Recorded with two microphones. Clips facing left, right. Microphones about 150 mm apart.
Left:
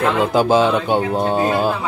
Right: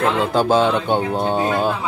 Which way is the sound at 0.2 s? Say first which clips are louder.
Left 3 dB; 10° left (ahead or behind).